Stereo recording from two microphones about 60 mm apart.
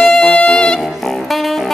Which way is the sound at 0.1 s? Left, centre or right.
Centre.